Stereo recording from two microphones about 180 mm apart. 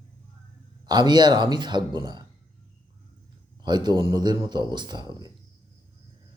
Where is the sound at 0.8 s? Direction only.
25° right (ahead or behind).